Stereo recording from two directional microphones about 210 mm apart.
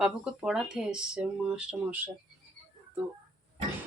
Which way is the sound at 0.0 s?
Centre (ahead or behind).